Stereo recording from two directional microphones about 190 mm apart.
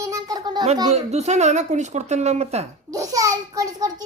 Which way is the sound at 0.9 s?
35° right (ahead or behind).